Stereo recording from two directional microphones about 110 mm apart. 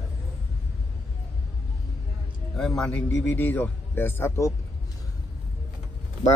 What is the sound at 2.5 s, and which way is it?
Speech, 5° left (ahead or behind).